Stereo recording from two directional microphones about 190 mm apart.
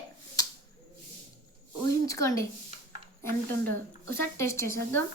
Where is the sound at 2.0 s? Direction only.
15° left (ahead or behind).